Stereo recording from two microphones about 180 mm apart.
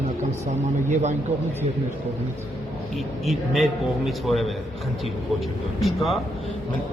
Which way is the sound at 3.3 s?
Centre (ahead or behind).